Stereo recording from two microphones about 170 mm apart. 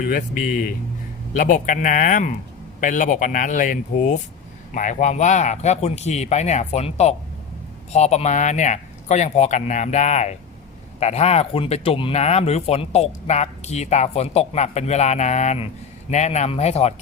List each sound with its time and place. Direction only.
0.0 s speech: 55° left (ahead or behind); by 16.9 s 40° left (ahead or behind)